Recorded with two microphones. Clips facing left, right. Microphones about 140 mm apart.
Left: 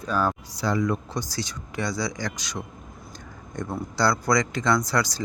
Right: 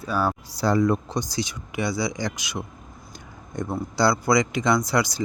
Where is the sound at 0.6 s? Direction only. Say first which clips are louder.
Right 5 dB; 35° right (ahead or behind).